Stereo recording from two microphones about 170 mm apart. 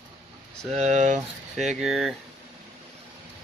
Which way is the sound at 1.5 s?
Centre (ahead or behind).